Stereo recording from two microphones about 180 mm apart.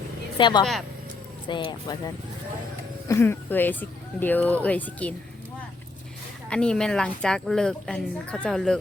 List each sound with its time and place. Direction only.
0.3 s speech: 25° left (ahead or behind)
0.6 s a woman's voice: centre (ahead or behind)
1.5 s speech: 25° left (ahead or behind)
3.1 s speech: 15° left (ahead or behind)
6.5 s a woman's voice: 5° left (ahead or behind)